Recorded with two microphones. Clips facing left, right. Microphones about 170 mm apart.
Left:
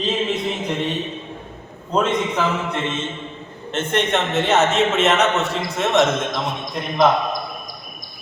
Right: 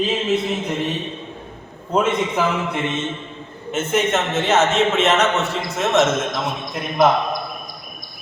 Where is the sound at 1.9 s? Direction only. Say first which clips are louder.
Right 1 dB; 10° right (ahead or behind).